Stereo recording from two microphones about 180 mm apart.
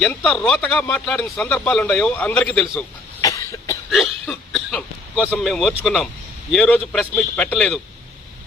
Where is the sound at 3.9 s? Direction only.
Centre (ahead or behind).